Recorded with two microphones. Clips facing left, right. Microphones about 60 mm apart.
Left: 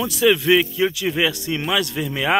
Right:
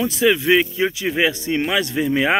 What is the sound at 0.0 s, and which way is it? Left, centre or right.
A man's voice, right.